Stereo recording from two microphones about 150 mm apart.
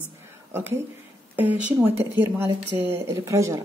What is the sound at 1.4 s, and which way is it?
Speech, 10° right (ahead or behind).